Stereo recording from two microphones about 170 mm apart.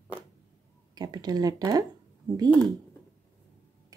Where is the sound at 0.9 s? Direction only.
25° right (ahead or behind).